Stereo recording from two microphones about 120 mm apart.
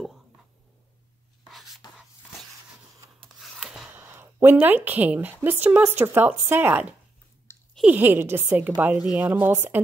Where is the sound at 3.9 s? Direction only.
20° right (ahead or behind).